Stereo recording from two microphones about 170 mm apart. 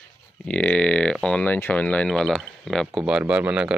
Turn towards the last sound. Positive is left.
turn(degrees=-5)  # may be behind; listen again after turning